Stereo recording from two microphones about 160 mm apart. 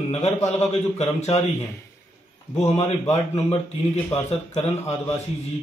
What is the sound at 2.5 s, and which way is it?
A man's voice, 40° left (ahead or behind).